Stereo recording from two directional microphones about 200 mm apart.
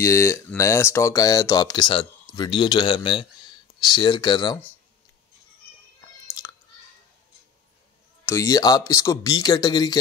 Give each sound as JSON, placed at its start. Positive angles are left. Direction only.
{"t": 0.0, "sound": "speech", "side_deg": 15}
{"t": 6.4, "sound": "a sound", "side_deg": 20}
{"t": 8.3, "sound": "speech", "side_deg": 15}